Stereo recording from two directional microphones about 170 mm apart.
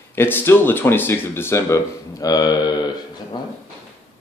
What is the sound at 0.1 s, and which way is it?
Speech, 15° left (ahead or behind).